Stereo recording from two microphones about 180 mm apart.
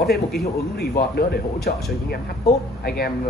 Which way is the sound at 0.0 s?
60° left (ahead or behind).